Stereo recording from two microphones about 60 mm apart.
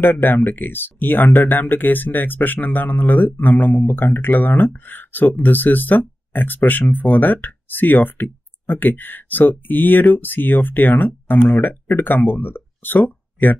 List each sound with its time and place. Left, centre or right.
0.0 s speech: left